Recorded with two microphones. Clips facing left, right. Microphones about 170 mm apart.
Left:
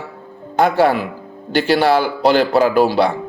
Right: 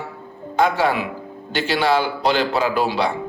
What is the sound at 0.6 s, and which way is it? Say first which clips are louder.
Speech: left 4 dB; 50° left (ahead or behind).